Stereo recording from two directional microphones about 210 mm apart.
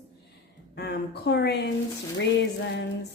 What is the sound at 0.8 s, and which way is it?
Speech, 50° left (ahead or behind).